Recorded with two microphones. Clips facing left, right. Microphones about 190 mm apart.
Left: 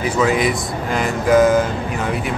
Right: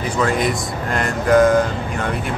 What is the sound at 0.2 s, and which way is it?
Speech, 5° left (ahead or behind).